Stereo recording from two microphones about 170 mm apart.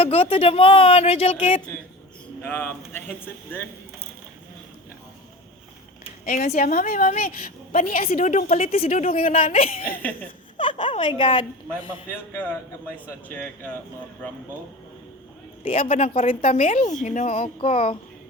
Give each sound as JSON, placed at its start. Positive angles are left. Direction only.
{"t": 0.0, "sound": "speech", "side_deg": 35}
{"t": 2.4, "sound": "speech", "side_deg": 10}
{"t": 6.2, "sound": "a woman's voice", "side_deg": 50}
{"t": 9.2, "sound": "a woman's voice", "side_deg": 50}
{"t": 10.6, "sound": "a woman's voice", "side_deg": 30}
{"t": 12.1, "sound": "speech", "side_deg": 10}
{"t": 15.6, "sound": "speech", "side_deg": 35}
{"t": 16.6, "sound": "speech", "side_deg": 50}